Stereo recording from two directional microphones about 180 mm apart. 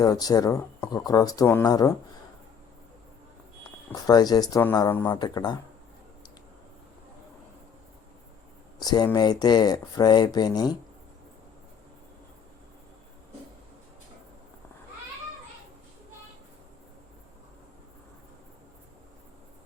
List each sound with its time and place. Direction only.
0.0 s speech: 20° left (ahead or behind)
3.9 s speech: 20° left (ahead or behind)
5.1 s speech: 25° left (ahead or behind)
8.8 s speech: 20° left (ahead or behind)